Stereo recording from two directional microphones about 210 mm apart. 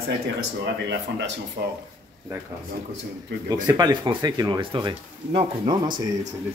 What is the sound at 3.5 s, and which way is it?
Speech, 20° right (ahead or behind).